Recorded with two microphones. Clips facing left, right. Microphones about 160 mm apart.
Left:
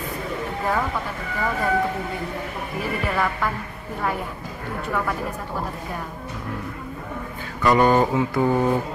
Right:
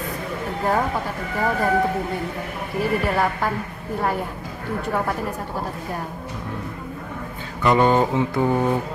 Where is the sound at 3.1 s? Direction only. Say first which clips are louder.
Right 2 dB; 35° right (ahead or behind).